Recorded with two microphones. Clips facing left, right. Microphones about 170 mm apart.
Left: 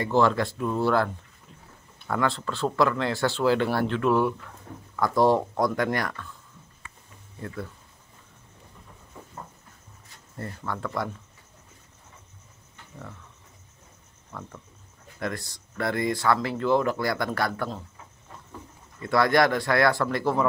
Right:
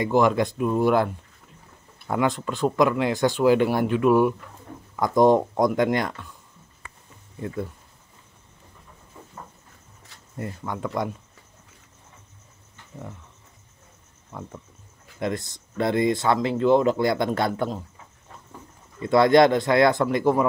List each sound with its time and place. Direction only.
0.0 s speech: 15° right (ahead or behind)
10.3 s speech: 15° right (ahead or behind)
14.3 s speech: 20° right (ahead or behind)
18.9 s speech: 20° right (ahead or behind)